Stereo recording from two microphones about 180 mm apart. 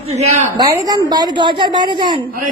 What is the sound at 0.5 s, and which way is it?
A woman's voice, 20° right (ahead or behind).